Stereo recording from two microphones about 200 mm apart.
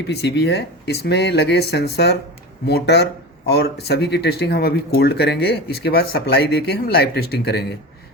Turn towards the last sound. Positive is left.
turn(degrees=55)  # may be behind; listen again after turning